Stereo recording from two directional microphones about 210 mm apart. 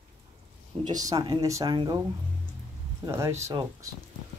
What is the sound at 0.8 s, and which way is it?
Speech, 15° right (ahead or behind).